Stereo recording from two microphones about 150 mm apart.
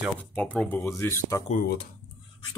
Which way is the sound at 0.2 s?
10° left (ahead or behind).